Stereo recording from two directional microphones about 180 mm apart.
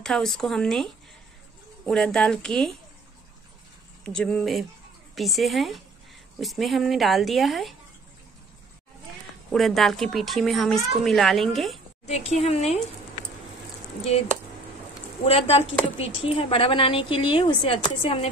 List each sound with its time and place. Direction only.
0.0 s a woman's voice: centre (ahead or behind)
4.0 s a woman's voice: 5° left (ahead or behind)
9.5 s a woman's voice: centre (ahead or behind)
12.1 s a woman's voice: 35° left (ahead or behind)
14.1 s a woman's voice: 35° left (ahead or behind)
15.2 s a woman's voice: 35° left (ahead or behind)